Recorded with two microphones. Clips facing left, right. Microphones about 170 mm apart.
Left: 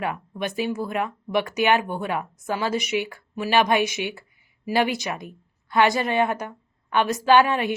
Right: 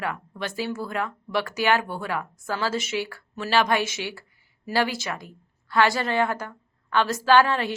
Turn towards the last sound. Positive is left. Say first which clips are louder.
# left 1 dB
turn(degrees=15)  # may be behind; listen again after turning